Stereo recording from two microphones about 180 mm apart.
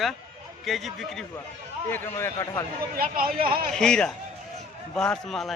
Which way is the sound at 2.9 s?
55° right (ahead or behind).